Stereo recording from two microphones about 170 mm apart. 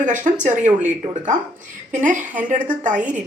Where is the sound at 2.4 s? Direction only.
50° right (ahead or behind).